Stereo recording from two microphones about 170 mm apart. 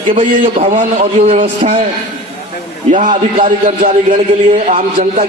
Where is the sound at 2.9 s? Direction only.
50° right (ahead or behind).